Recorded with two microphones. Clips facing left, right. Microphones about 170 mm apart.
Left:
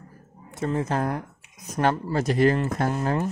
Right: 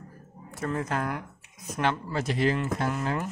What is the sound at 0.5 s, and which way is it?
Speech, 25° left (ahead or behind).